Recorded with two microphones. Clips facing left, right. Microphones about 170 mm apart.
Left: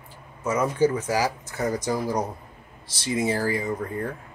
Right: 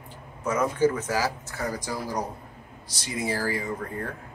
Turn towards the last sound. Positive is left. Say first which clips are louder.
# left 4 dB
turn(degrees=20)  # may be behind; listen again after turning